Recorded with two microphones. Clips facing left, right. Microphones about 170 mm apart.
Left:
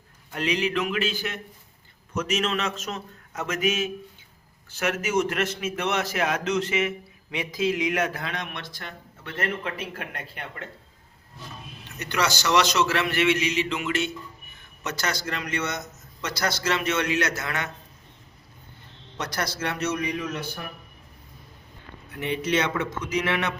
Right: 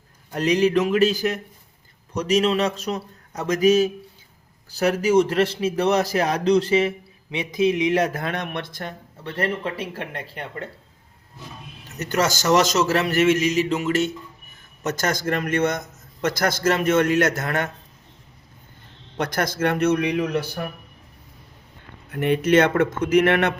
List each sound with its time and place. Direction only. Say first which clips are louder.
0.3 s a man's voice: right 7 dB; 40° right (ahead or behind)
7.3 s speech: right 5 dB; 20° right (ahead or behind)
7.9 s a man's voice: right 5 dB; 40° right (ahead or behind)
9.2 s a man's voice: right 5 dB; 35° right (ahead or behind)
11.9 s a man's voice: right 4 dB; 45° right (ahead or behind)
19.1 s a man's voice: right 6 dB; 55° right (ahead or behind)
22.1 s a man's voice: right 8 dB; 50° right (ahead or behind)